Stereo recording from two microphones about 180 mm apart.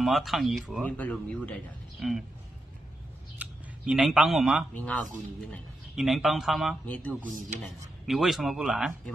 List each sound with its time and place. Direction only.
0.0 s speech: centre (ahead or behind)
3.3 s speech: 5° right (ahead or behind)
7.2 s speech: 40° right (ahead or behind)
8.1 s speech: centre (ahead or behind)